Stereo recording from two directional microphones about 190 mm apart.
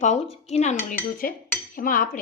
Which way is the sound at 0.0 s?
35° left (ahead or behind).